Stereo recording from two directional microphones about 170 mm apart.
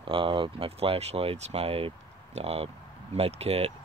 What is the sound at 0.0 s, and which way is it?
Speech, 30° right (ahead or behind).